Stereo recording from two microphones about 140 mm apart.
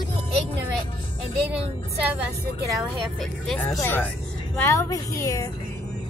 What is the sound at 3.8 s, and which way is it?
A woman's voice, 15° left (ahead or behind).